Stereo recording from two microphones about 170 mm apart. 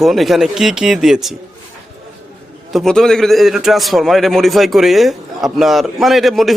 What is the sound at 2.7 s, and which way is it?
A man's voice, centre (ahead or behind).